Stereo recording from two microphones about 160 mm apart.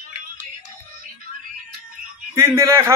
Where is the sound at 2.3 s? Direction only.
15° right (ahead or behind).